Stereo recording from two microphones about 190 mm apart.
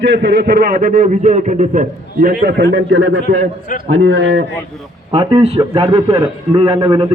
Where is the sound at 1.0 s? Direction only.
40° right (ahead or behind).